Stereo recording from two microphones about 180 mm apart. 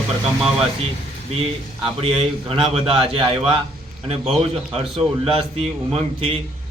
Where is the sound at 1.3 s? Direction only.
30° right (ahead or behind).